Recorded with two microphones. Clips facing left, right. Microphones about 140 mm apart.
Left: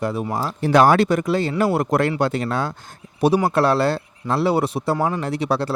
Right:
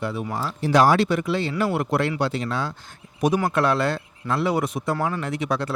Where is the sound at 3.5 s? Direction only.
35° left (ahead or behind).